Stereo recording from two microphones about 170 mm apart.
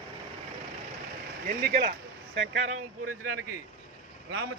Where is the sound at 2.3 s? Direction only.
90° right.